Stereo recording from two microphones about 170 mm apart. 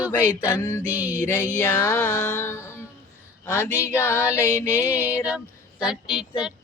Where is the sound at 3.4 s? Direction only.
15° left (ahead or behind).